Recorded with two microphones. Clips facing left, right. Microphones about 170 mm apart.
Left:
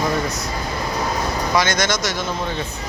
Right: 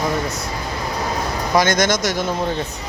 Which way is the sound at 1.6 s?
50° right (ahead or behind).